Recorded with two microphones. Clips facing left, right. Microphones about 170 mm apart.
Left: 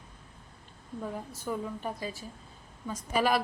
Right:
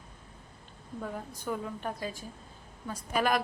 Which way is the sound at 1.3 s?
5° left (ahead or behind).